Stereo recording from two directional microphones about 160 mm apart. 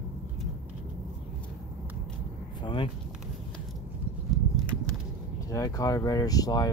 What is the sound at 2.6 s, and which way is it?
Vehicle, 30° left (ahead or behind).